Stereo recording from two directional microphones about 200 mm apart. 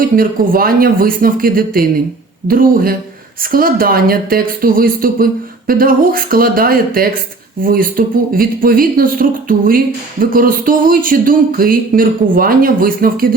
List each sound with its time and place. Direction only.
0.2 s speech: 45° right (ahead or behind)